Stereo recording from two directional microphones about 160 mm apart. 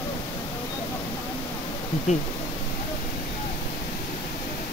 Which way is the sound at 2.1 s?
45° left (ahead or behind).